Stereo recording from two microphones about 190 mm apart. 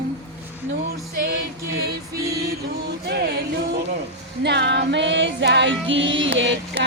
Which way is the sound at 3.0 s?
55° right (ahead or behind).